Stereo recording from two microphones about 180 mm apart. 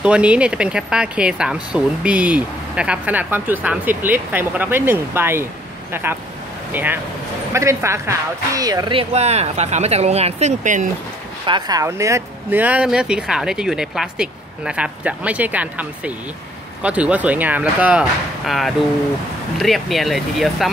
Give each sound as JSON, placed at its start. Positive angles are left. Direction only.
{"t": 0.0, "sound": "speech", "side_deg": -5}
{"t": 9.1, "sound": "speech", "side_deg": -35}
{"t": 11.4, "sound": "speech", "side_deg": -25}